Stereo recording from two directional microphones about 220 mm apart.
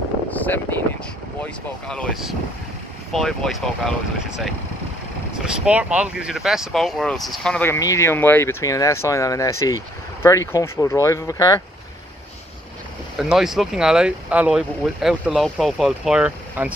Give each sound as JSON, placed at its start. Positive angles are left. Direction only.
{"t": 0.3, "sound": "vehicle", "side_deg": 5}
{"t": 1.9, "sound": "speech", "side_deg": 5}
{"t": 13.2, "sound": "speech", "side_deg": 0}